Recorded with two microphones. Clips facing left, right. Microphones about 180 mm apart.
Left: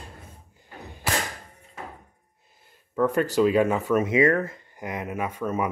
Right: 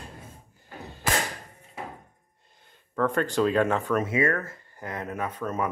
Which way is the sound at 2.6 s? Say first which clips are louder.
Left 3 dB; 10° left (ahead or behind).